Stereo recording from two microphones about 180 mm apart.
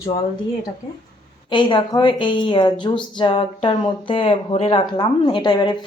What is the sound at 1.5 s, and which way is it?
A woman's voice, 25° left (ahead or behind).